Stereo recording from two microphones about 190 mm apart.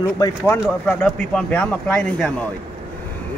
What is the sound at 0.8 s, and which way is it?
Speech, 5° left (ahead or behind).